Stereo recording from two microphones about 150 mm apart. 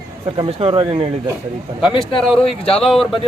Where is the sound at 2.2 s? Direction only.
5° left (ahead or behind).